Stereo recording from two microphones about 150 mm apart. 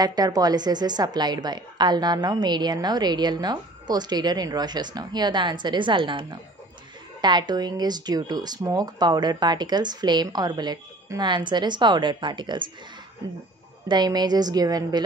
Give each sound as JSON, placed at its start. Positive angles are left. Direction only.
{"t": 0.0, "sound": "a woman's voice", "side_deg": -25}
{"t": 13.8, "sound": "a woman's voice", "side_deg": -30}